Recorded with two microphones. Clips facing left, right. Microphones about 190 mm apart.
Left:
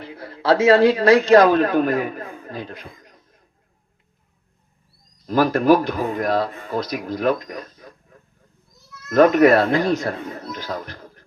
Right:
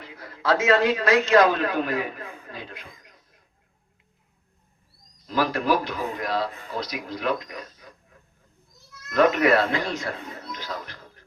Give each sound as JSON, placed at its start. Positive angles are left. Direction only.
{"t": 0.0, "sound": "a man's voice", "side_deg": 30}
{"t": 5.2, "sound": "speech", "side_deg": 45}
{"t": 9.0, "sound": "speech", "side_deg": 45}